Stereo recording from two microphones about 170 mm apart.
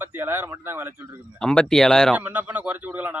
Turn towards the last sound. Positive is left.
turn(degrees=-10)  # may be behind; listen again after turning